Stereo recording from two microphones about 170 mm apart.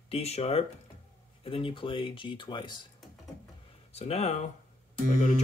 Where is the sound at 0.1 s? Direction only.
35° left (ahead or behind).